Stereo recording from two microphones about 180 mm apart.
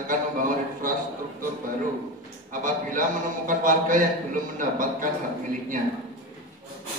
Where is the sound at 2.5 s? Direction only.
45° right (ahead or behind).